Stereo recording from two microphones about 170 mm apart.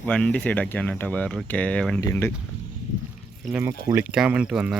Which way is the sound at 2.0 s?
20° left (ahead or behind).